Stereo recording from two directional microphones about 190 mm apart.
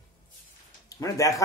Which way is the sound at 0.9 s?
15° left (ahead or behind).